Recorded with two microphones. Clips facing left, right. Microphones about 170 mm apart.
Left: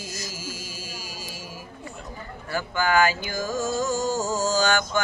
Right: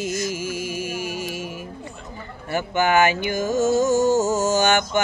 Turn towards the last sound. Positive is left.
turn(degrees=-20)  # may be behind; listen again after turning